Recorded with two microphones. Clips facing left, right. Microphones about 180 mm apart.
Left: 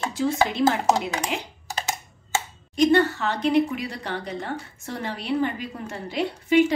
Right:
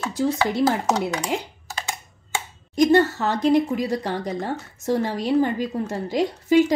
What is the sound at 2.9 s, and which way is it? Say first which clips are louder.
A woman's voice: right 2 dB; 45° right (ahead or behind).